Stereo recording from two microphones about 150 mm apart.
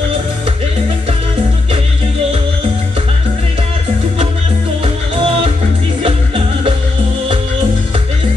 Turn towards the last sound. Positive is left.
turn(degrees=-40)  # may be behind; listen again after turning